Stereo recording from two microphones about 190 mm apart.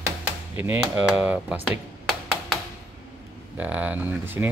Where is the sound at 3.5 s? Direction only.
10° right (ahead or behind).